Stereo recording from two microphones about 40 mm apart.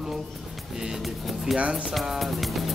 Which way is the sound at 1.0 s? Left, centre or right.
Centre.